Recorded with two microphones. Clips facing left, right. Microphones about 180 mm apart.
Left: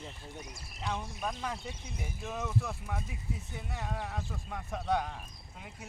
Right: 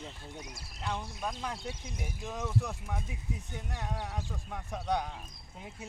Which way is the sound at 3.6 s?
5° left (ahead or behind).